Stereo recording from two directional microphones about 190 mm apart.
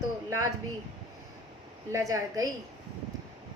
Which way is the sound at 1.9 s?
20° right (ahead or behind).